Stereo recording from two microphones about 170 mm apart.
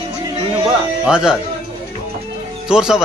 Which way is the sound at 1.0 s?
5° right (ahead or behind).